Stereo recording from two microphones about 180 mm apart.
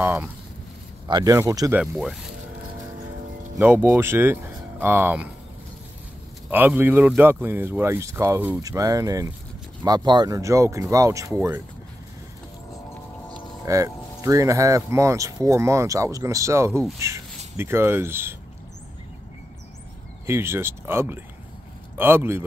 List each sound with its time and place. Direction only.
0.0 s speech: 10° right (ahead or behind)
1.0 s speech: 20° right (ahead or behind)
1.8 s speech: 5° right (ahead or behind)
3.5 s speech: 15° right (ahead or behind)
6.5 s speech: 10° right (ahead or behind)
13.7 s speech: 15° right (ahead or behind)
20.2 s speech: 15° right (ahead or behind)